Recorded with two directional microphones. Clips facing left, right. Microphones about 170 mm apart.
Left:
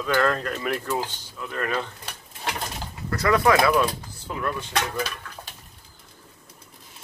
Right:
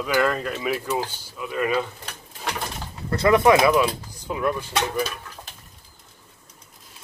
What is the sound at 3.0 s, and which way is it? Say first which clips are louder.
Speech: right 4 dB; 25° right (ahead or behind).